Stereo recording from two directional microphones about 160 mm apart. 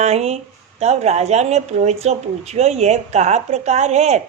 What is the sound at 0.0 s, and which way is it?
A woman's voice, 45° right (ahead or behind).